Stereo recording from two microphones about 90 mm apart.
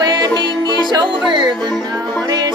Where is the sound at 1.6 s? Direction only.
5° left (ahead or behind).